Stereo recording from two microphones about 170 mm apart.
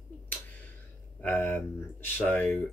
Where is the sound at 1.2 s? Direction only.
10° left (ahead or behind).